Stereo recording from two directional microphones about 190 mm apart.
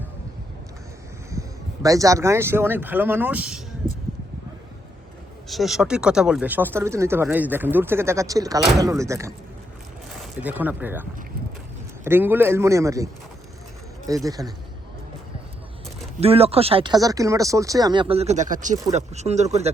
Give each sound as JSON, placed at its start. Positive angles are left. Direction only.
{"t": 1.3, "sound": "speech", "side_deg": -15}
{"t": 5.5, "sound": "speech", "side_deg": 0}
{"t": 10.4, "sound": "speech", "side_deg": -10}
{"t": 12.0, "sound": "speech", "side_deg": -10}
{"t": 14.1, "sound": "speech", "side_deg": -20}
{"t": 16.2, "sound": "speech", "side_deg": -30}